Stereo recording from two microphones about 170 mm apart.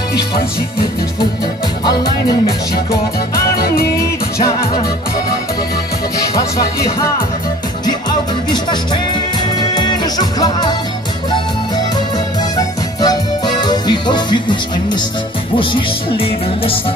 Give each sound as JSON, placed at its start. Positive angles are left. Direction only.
{"t": 3.5, "sound": "music", "side_deg": 65}
{"t": 7.8, "sound": "music", "side_deg": 25}
{"t": 12.5, "sound": "music", "side_deg": 25}